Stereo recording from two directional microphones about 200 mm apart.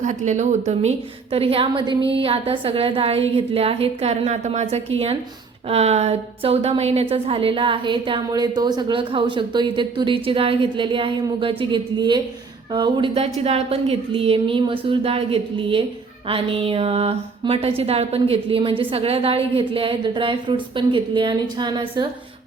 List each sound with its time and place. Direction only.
0.0 s a woman's voice: 35° right (ahead or behind); by 22.0 s 20° right (ahead or behind)